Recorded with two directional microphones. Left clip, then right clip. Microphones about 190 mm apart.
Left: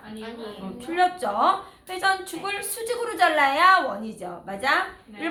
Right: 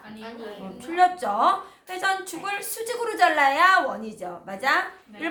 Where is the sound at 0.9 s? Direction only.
5° right (ahead or behind).